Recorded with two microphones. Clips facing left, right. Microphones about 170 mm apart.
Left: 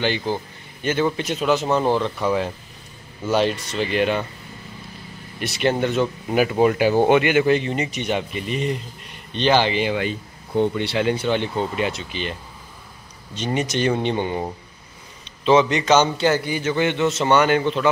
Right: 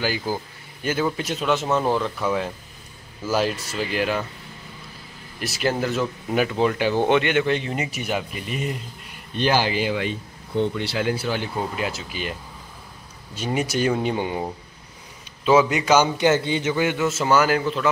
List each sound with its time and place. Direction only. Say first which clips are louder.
0.0 s speech: left 2 dB; 5° right (ahead or behind)
5.4 s a man's voice: left 3 dB; centre (ahead or behind)
16.3 s a man's voice: right 1 dB; 25° right (ahead or behind)
16.7 s speech: left 5 dB; 5° right (ahead or behind)